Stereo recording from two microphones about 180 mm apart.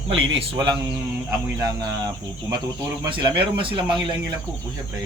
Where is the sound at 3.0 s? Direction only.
25° right (ahead or behind).